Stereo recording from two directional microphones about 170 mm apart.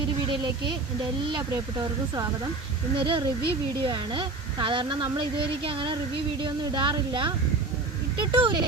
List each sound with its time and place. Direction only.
0.3 s speech: 30° right (ahead or behind)
3.0 s speech: 30° right (ahead or behind)